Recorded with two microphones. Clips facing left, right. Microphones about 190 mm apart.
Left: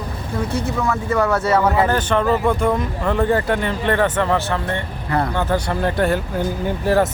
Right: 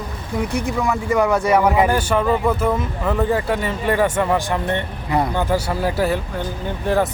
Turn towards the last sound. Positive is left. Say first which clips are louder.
# left 2 dB
turn(degrees=0)  # may be behind; listen again after turning